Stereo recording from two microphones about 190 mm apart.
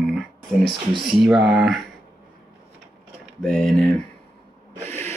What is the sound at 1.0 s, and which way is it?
Speech, centre (ahead or behind).